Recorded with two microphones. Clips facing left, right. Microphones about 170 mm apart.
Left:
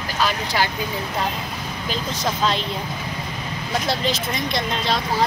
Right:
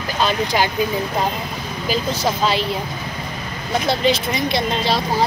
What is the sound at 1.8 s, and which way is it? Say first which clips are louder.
Speech: right 5 dB; 5° right (ahead or behind).